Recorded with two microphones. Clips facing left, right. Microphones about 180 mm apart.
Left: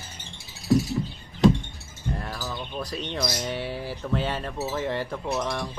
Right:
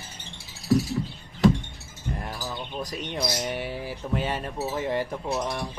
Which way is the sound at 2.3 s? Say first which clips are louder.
Even; 20° right (ahead or behind).